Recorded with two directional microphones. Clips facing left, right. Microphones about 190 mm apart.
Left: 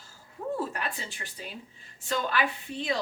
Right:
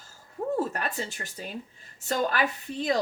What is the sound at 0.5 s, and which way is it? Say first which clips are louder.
Speech: right 3 dB; 45° right (ahead or behind).